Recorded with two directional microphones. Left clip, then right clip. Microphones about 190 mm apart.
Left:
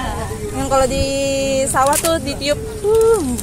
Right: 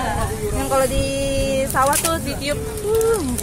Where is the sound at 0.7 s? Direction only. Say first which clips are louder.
Left 4 dB; 50° left (ahead or behind).